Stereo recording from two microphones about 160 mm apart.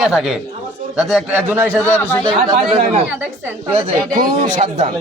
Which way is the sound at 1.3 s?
10° right (ahead or behind).